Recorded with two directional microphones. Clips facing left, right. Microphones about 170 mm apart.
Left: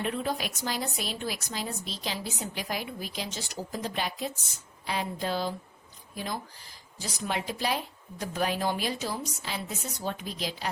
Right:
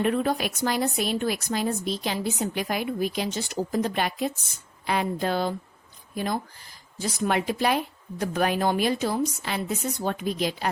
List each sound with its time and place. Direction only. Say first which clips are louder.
0.0 s a woman's voice: right 7 dB; 55° right (ahead or behind)